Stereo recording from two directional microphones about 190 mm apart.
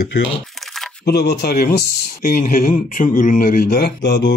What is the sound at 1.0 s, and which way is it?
Speech, 60° left (ahead or behind).